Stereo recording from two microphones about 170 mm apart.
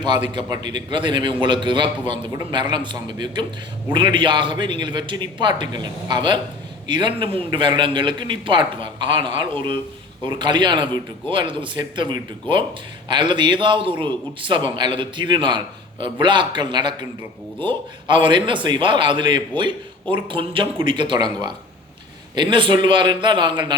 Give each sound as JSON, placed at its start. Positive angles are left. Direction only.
{"t": 0.0, "sound": "a man's voice", "side_deg": -25}